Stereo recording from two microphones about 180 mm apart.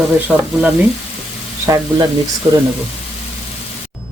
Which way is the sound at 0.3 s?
5° right (ahead or behind).